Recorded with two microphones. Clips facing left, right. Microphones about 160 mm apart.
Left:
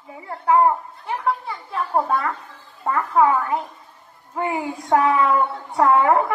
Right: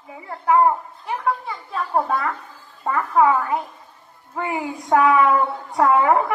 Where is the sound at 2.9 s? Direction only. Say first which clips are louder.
Right 1 dB; 20° right (ahead or behind).